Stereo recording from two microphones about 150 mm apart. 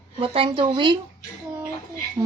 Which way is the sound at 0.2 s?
35° right (ahead or behind).